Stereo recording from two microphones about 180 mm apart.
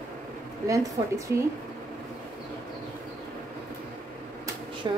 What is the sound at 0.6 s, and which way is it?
Speech, 20° right (ahead or behind).